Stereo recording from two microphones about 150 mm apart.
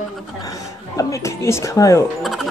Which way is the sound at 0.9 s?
20° left (ahead or behind).